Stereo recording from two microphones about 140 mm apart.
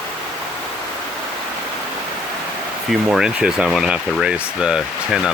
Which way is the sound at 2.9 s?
5° right (ahead or behind).